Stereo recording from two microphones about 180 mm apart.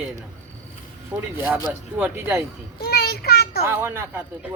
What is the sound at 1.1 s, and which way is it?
Speech, 10° right (ahead or behind).